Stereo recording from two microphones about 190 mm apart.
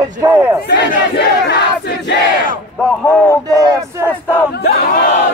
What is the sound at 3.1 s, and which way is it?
Speech, 10° left (ahead or behind).